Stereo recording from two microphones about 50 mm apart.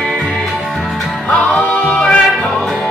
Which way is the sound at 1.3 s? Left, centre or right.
Left.